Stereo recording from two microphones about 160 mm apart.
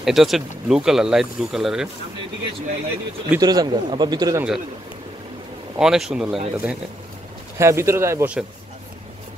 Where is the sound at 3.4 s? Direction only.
25° right (ahead or behind).